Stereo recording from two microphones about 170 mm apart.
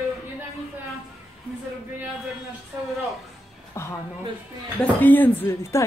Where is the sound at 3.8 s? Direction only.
15° left (ahead or behind).